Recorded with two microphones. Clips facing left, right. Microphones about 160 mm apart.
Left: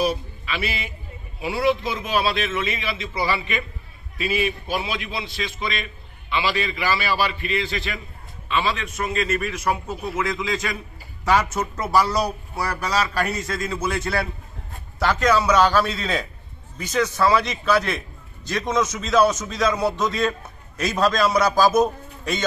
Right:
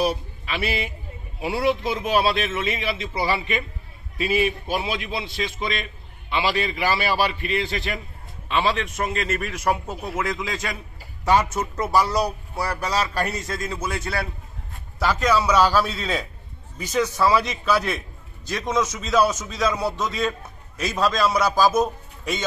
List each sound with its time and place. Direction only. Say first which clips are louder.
0.0 s a man's voice: even; 55° right (ahead or behind); by 5.1 s 35° right (ahead or behind)
5.2 s a man's voice: right 1 dB; 45° right (ahead or behind)
10.1 s a man's voice: left 2 dB; 40° right (ahead or behind)
11.2 s a man's voice: even; 20° right (ahead or behind); by 22.4 s 5° right (ahead or behind)